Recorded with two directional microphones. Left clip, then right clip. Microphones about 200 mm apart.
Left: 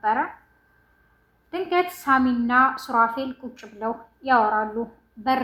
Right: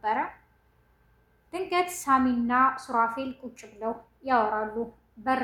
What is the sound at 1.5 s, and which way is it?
Speech, 10° left (ahead or behind).